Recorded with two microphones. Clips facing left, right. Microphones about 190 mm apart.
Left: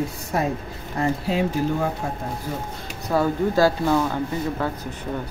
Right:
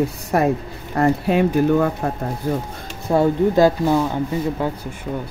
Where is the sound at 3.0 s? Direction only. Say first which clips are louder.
Right 5 dB; 20° right (ahead or behind).